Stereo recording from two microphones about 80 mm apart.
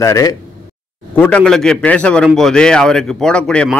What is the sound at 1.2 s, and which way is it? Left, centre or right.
Speech, centre.